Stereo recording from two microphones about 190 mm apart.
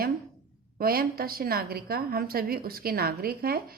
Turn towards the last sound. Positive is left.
turn(degrees=-50)  # may be behind; listen again after turning